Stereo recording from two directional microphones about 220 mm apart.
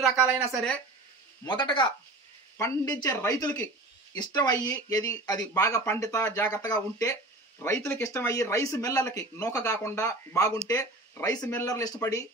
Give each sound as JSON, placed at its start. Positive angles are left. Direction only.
{"t": 0.0, "sound": "speech", "side_deg": 0}
{"t": 1.4, "sound": "speech", "side_deg": 20}